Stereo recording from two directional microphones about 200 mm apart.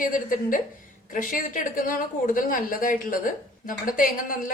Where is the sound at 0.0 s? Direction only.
40° left (ahead or behind).